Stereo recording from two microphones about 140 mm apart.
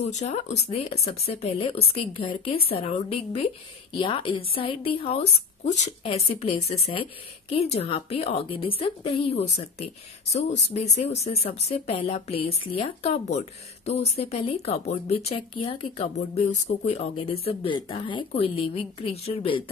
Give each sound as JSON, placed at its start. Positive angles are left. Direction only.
{"t": 0.1, "sound": "a woman's voice", "side_deg": 55}